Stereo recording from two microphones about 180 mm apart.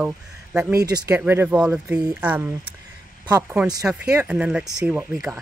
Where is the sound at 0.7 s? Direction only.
15° right (ahead or behind).